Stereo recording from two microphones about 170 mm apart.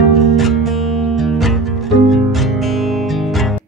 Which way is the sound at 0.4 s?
Centre (ahead or behind).